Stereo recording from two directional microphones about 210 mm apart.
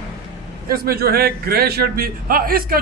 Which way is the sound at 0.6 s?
45° right (ahead or behind).